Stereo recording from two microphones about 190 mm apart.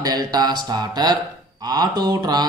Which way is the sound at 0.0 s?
20° right (ahead or behind).